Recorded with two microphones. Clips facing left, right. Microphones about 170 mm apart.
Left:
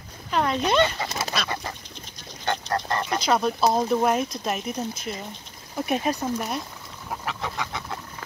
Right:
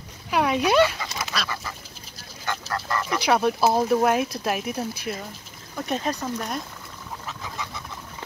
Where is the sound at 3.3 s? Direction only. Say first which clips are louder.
Right 2 dB; 5° right (ahead or behind).